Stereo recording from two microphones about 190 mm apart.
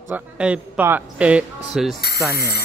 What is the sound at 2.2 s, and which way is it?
Speech, 55° left (ahead or behind).